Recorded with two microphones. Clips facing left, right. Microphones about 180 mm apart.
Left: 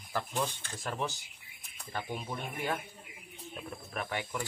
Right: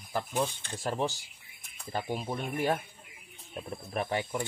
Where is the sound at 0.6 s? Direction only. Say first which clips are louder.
Right 5 dB; 30° right (ahead or behind).